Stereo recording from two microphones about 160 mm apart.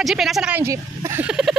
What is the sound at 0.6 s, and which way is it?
Speech, 15° right (ahead or behind).